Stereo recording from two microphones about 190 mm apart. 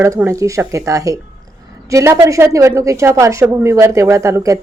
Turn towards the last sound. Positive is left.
turn(degrees=-15)  # may be behind; listen again after turning